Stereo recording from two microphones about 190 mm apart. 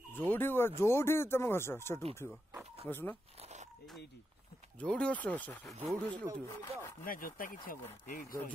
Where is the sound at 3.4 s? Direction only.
35° right (ahead or behind).